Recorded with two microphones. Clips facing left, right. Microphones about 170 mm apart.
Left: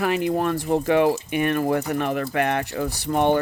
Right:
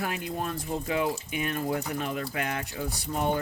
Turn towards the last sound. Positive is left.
turn(degrees=70)  # may be behind; listen again after turning